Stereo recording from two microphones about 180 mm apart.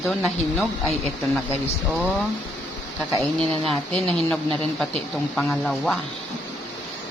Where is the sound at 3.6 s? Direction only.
5° left (ahead or behind).